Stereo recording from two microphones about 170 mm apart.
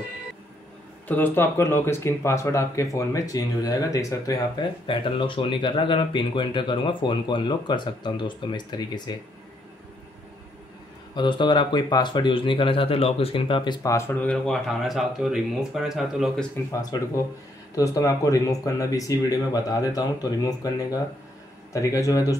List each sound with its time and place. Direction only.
1.0 s speech: 10° left (ahead or behind)
11.1 s speech: 25° left (ahead or behind); by 16.4 s centre (ahead or behind)
16.9 s speech: 25° left (ahead or behind)